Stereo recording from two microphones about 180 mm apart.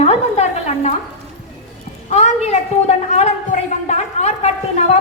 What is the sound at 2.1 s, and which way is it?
A woman's voice, 40° left (ahead or behind).